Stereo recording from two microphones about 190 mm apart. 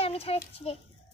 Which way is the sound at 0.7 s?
30° left (ahead or behind).